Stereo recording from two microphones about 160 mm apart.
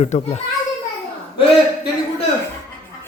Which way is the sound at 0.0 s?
45° left (ahead or behind).